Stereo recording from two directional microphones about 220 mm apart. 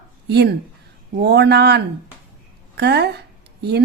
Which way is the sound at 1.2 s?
50° right (ahead or behind).